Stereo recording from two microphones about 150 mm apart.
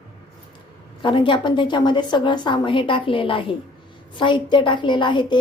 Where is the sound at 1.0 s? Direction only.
35° left (ahead or behind).